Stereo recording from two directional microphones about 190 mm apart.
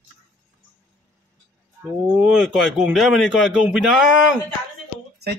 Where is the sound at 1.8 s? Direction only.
5° right (ahead or behind).